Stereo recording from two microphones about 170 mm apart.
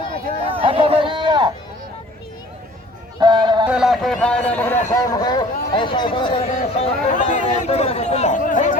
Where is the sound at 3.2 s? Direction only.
25° right (ahead or behind).